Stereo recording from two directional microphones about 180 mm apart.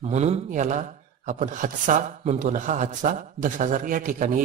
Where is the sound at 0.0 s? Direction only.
40° right (ahead or behind).